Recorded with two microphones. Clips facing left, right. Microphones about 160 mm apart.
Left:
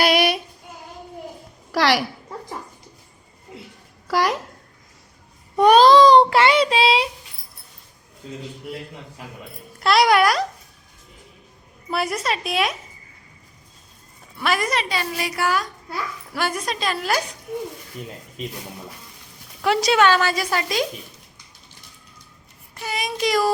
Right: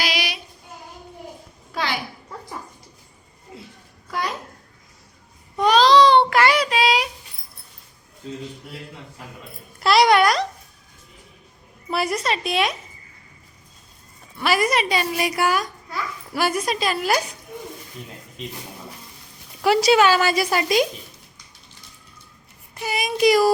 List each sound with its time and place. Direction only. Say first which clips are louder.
0.0 s child singing: left 9 dB; 55° left (ahead or behind)
1.7 s a child's voice: left 7 dB; 80° left
4.1 s a child's voice: left 7 dB; 85° left
5.5 s babbling: left 3 dB; 55° left (ahead or behind)
6.3 s a child's voice: left 2 dB; 25° left (ahead or behind)
9.8 s a woman's voice: right 1 dB; centre (ahead or behind)
11.9 s a woman's voice: right 1 dB; centre (ahead or behind)
14.4 s a child's voice: right 2 dB; 5° right (ahead or behind)
19.6 s a child's voice: right 2 dB; 5° right (ahead or behind)
22.8 s a child's voice: right 5 dB; 10° right (ahead or behind)